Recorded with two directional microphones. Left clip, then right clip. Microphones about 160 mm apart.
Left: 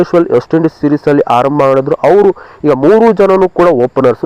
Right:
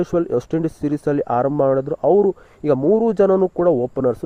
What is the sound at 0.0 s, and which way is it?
Speech, 40° right (ahead or behind).